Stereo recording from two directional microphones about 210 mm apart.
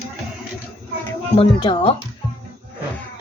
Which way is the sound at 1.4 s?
25° left (ahead or behind).